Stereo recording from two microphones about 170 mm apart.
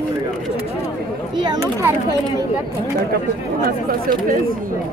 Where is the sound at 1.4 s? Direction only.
20° right (ahead or behind).